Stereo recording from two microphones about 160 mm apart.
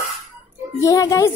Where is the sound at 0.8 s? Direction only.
20° left (ahead or behind).